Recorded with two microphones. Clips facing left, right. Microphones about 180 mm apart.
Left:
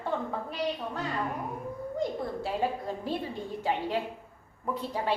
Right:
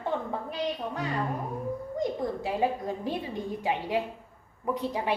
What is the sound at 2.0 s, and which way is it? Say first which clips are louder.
A woman's voice: right 1 dB; 15° right (ahead or behind).